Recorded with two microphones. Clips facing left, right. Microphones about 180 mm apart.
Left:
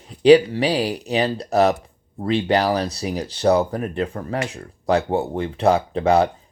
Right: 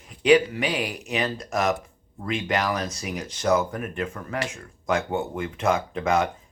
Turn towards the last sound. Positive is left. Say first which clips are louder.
# left 6 dB
turn(degrees=35)  # may be behind; listen again after turning